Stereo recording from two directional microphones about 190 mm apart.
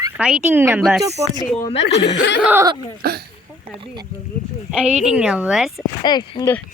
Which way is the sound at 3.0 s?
55° right (ahead or behind).